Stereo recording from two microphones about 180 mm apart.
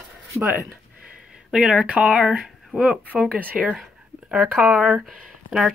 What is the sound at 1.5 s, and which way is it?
Speech, 5° right (ahead or behind).